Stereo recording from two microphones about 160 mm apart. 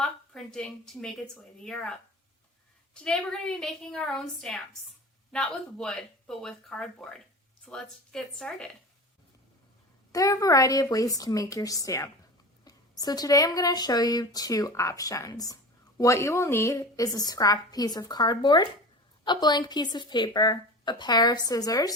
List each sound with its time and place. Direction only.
0.0 s a woman's voice: 5° left (ahead or behind)
10.1 s speech: 20° left (ahead or behind)